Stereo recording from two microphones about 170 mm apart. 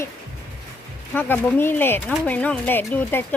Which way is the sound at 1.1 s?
10° left (ahead or behind).